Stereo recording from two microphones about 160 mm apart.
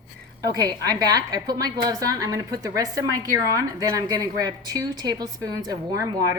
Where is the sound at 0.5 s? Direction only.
25° right (ahead or behind).